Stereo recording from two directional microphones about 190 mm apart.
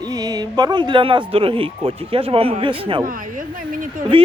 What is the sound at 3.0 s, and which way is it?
Speech, 45° right (ahead or behind).